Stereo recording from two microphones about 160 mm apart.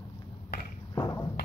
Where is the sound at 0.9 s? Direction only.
20° left (ahead or behind).